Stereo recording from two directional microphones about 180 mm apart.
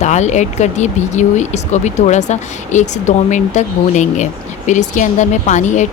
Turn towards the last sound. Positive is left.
turn(degrees=40)  # may be behind; listen again after turning